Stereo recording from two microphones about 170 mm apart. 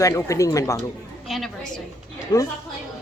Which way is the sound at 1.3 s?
Centre (ahead or behind).